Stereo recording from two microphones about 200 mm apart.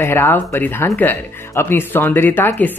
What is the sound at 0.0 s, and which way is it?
Speech, 10° left (ahead or behind).